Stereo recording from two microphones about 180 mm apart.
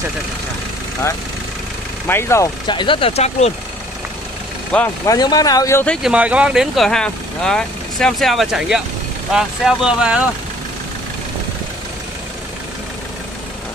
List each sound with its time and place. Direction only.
2.0 s speech: 15° left (ahead or behind); by 3.5 s 35° left (ahead or behind)
5.0 s speech: 20° left (ahead or behind)
6.0 s speech: 5° right (ahead or behind)